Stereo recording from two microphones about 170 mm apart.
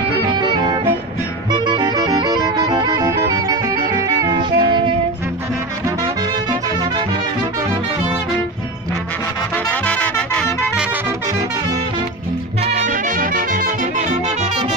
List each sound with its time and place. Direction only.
1.5 s music: 25° right (ahead or behind)
9.7 s music: 10° left (ahead or behind)
12.7 s music: 50° right (ahead or behind)